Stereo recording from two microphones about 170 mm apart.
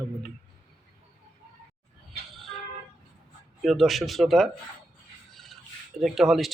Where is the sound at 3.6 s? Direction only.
Centre (ahead or behind).